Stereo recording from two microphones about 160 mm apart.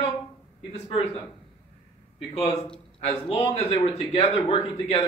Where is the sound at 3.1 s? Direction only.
35° left (ahead or behind).